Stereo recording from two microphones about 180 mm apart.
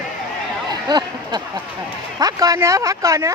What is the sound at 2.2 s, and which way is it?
Speech, 20° right (ahead or behind).